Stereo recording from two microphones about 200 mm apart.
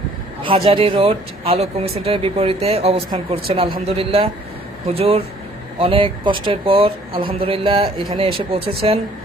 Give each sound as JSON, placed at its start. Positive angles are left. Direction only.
{"t": 0.4, "sound": "speech", "side_deg": -30}